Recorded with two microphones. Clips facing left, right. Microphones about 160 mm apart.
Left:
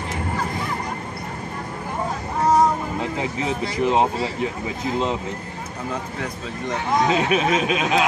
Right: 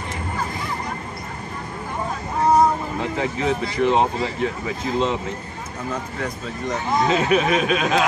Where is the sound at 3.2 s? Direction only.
10° left (ahead or behind).